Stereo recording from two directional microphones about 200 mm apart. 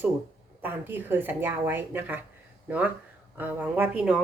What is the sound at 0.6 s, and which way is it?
A woman's voice, 10° right (ahead or behind).